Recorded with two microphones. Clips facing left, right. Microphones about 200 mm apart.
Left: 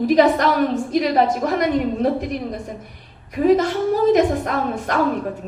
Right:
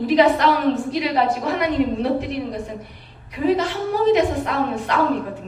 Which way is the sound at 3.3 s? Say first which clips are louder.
Left 4 dB; 45° left (ahead or behind).